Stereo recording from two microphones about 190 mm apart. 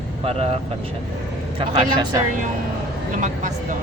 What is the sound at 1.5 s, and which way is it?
Speech, 20° right (ahead or behind).